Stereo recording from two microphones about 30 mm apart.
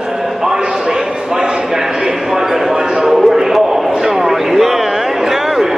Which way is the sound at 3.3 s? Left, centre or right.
Centre.